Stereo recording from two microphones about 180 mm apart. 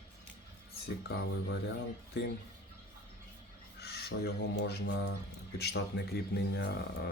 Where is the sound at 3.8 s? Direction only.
60° left (ahead or behind).